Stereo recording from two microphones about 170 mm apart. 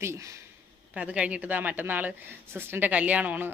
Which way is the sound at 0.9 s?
5° right (ahead or behind).